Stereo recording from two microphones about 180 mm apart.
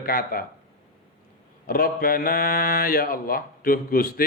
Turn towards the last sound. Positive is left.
turn(degrees=55)  # may be behind; listen again after turning